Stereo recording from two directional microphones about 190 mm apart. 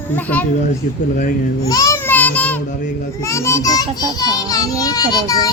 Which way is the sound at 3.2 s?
15° left (ahead or behind).